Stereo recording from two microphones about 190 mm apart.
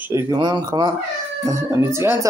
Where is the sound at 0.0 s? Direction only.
15° right (ahead or behind).